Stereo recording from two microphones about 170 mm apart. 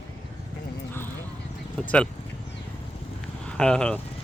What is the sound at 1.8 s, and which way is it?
Speech, 5° left (ahead or behind).